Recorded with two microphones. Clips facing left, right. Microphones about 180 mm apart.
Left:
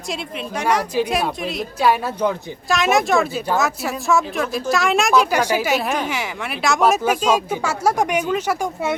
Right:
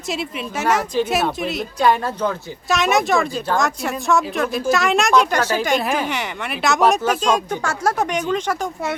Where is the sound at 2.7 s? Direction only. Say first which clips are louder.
Even; centre (ahead or behind).